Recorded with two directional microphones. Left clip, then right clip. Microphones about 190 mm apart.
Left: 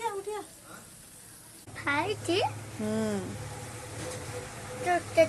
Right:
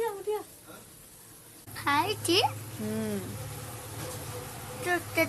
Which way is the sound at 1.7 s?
40° right (ahead or behind).